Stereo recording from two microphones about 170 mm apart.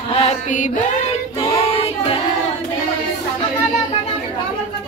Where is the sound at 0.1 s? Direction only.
40° left (ahead or behind).